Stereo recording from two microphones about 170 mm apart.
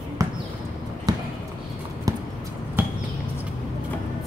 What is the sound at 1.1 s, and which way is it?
Basketball bounce, 25° right (ahead or behind).